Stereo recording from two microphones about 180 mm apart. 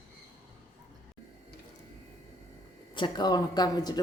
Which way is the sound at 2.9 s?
25° left (ahead or behind).